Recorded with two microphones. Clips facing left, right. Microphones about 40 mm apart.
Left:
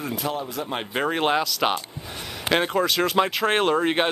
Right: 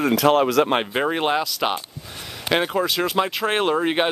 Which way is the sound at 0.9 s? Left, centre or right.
Centre.